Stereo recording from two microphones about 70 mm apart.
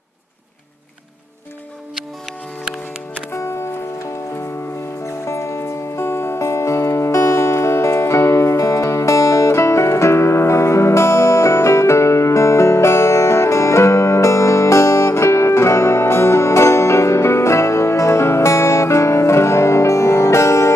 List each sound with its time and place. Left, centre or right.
3.3 s music: left
5.2 s music: left